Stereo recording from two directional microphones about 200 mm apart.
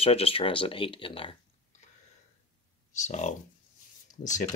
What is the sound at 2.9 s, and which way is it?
Speech, 35° left (ahead or behind).